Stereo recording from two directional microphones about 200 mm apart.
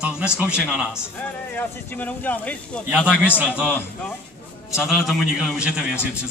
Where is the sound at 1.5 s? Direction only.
10° left (ahead or behind).